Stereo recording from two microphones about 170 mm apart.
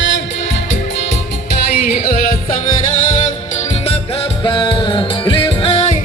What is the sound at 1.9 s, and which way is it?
Music, 60° left (ahead or behind).